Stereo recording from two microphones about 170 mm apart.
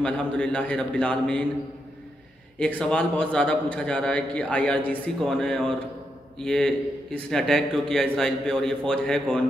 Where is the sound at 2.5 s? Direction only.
5° left (ahead or behind).